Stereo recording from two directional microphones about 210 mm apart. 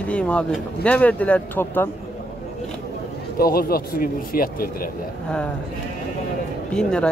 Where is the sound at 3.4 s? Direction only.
45° left (ahead or behind).